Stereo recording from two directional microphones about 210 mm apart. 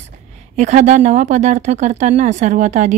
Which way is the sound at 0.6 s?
35° right (ahead or behind).